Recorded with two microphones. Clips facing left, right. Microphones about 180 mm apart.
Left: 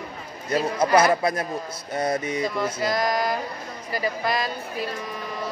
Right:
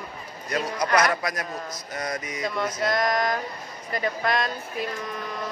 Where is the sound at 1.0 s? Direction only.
30° left (ahead or behind).